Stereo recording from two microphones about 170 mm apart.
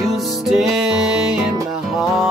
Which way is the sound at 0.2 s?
Centre (ahead or behind).